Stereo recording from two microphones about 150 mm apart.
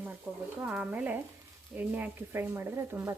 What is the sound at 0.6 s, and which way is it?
Speech, 10° right (ahead or behind).